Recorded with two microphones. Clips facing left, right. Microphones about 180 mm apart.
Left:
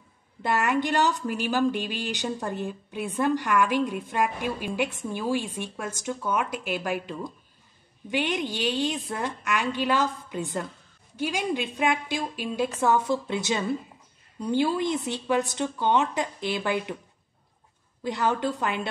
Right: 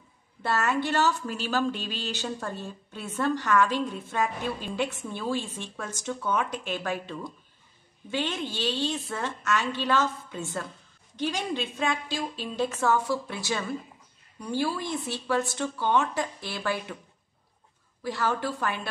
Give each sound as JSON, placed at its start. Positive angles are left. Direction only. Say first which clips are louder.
{"t": 0.4, "sound": "a woman's voice", "louder": "left 2 dB", "side_deg": 15}
{"t": 18.0, "sound": "a woman's voice", "louder": "left 3 dB", "side_deg": 20}